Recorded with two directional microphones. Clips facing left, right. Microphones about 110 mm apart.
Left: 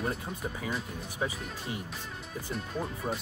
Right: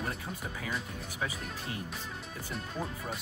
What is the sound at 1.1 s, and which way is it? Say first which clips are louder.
Speech: left 3 dB; 20° left (ahead or behind).